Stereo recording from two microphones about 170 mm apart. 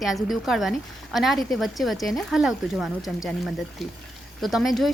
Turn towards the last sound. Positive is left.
turn(degrees=0)  # may be behind; listen again after turning